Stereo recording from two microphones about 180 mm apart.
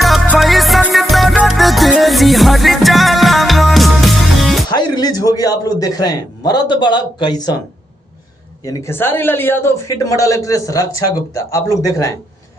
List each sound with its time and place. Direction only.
0.0 s music: centre (ahead or behind)
4.7 s a man's voice: 20° left (ahead or behind)
8.6 s speech: 15° left (ahead or behind)